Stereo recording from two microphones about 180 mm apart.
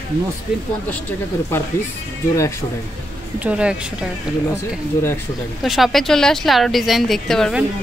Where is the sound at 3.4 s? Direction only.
5° right (ahead or behind).